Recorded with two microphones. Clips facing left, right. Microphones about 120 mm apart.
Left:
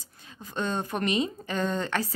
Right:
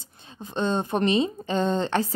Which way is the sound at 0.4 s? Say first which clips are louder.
Right 5 dB; 25° right (ahead or behind).